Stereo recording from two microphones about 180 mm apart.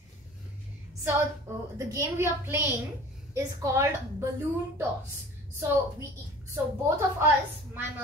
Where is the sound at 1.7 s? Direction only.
20° right (ahead or behind).